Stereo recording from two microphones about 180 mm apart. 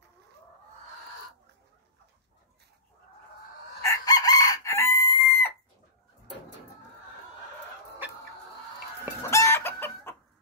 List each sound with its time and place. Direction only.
3.8 s chicken: 20° left (ahead or behind)
9.3 s chicken: 15° left (ahead or behind)